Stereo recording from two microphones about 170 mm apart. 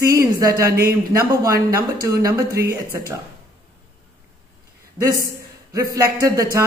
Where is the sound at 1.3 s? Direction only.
20° right (ahead or behind).